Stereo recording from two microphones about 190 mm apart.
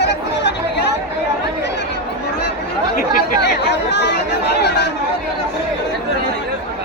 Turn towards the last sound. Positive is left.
turn(degrees=60)  # may be behind; listen again after turning